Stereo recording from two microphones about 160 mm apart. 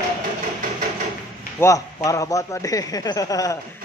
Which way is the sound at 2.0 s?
20° left (ahead or behind).